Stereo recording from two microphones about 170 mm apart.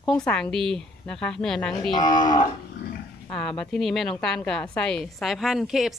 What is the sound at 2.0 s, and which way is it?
Livestock, 25° left (ahead or behind).